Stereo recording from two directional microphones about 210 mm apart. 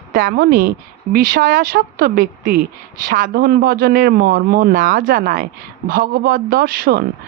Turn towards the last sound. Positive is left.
turn(degrees=-45)  # may be behind; listen again after turning